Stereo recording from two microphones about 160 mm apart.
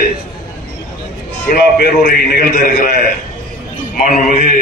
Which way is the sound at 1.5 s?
70° left (ahead or behind).